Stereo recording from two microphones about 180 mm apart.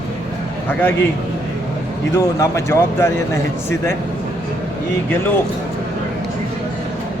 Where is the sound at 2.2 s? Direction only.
15° left (ahead or behind).